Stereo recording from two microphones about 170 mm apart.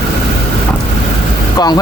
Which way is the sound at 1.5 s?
25° left (ahead or behind).